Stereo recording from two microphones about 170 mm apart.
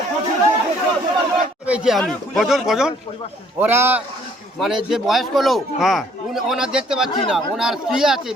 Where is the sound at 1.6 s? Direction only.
5° right (ahead or behind).